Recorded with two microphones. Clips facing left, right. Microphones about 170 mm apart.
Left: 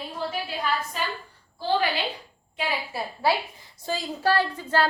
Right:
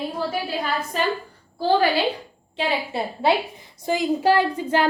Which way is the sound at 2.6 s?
25° right (ahead or behind).